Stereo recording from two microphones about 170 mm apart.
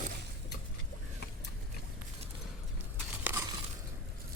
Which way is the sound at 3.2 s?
15° right (ahead or behind).